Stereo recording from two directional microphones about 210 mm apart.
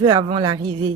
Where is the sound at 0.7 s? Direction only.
90° right.